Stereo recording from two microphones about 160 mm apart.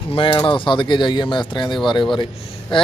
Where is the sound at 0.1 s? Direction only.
30° left (ahead or behind).